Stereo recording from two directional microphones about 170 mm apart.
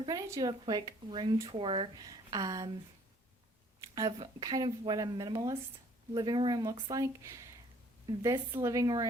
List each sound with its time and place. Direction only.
0.0 s speech: 20° right (ahead or behind)
3.8 s a sound: 20° right (ahead or behind)
4.2 s speech: 20° right (ahead or behind)